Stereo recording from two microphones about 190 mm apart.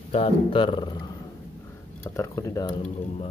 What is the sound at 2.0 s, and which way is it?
Speech, 15° left (ahead or behind).